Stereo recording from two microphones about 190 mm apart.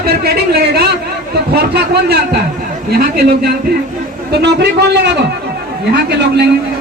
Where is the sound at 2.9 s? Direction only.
55° right (ahead or behind).